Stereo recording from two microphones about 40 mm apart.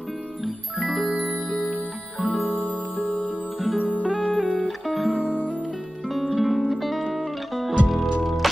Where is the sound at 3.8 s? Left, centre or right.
Right.